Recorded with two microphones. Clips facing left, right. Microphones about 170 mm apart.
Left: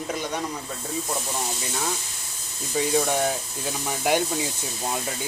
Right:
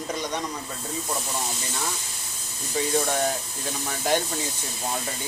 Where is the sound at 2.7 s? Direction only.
10° left (ahead or behind).